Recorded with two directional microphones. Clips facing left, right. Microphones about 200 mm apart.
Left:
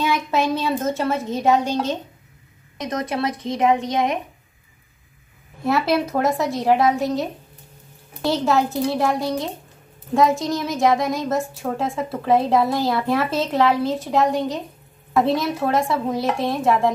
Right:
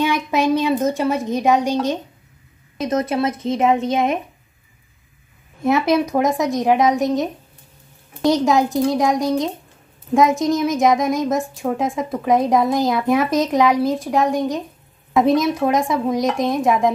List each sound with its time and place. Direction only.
0.0 s a woman's voice: 15° right (ahead or behind)
5.6 s a woman's voice: 20° right (ahead or behind)